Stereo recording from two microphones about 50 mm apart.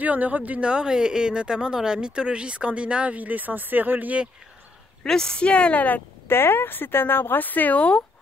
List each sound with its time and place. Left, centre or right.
0.0 s speech: right
0.5 s speech: right
5.0 s a woman's voice: centre; by 6.0 s left
6.2 s speech: left